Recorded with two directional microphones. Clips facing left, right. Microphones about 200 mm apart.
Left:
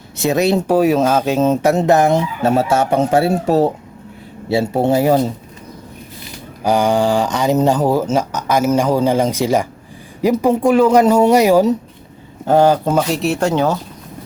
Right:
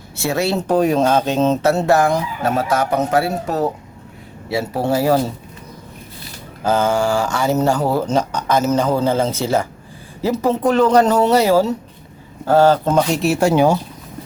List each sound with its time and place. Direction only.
0.2 s speech: 20° left (ahead or behind)
6.6 s speech: 15° left (ahead or behind); by 13.7 s 10° right (ahead or behind)